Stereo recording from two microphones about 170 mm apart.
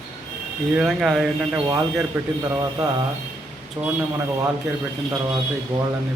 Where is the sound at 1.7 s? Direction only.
20° right (ahead or behind).